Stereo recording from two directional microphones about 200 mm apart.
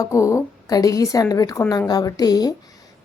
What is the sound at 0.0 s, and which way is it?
A woman's voice, 15° left (ahead or behind).